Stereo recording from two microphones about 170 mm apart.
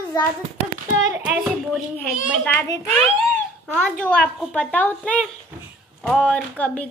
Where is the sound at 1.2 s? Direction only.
5° right (ahead or behind).